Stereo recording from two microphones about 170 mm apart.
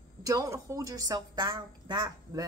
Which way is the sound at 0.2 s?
20° right (ahead or behind).